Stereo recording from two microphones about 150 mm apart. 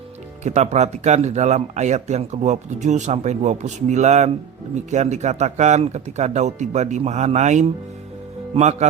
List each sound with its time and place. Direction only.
0.4 s speech: 50° right (ahead or behind)